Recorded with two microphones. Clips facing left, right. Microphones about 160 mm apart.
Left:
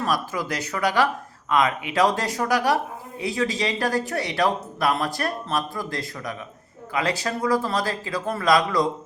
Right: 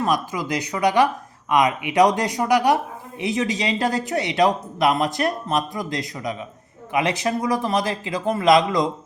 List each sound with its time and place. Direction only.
0.0 s speech: 15° right (ahead or behind)